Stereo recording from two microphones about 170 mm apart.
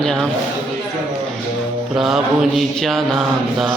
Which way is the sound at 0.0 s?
Centre (ahead or behind).